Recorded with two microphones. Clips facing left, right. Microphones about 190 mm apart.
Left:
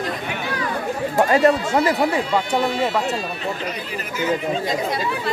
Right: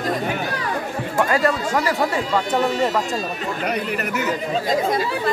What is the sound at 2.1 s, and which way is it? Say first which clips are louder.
Speech: even; 10° left (ahead or behind).